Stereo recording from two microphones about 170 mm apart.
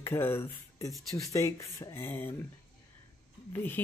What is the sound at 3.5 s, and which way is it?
Speech, 10° left (ahead or behind).